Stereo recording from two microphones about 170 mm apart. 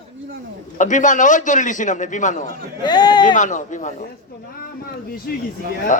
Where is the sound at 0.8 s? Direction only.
45° left (ahead or behind).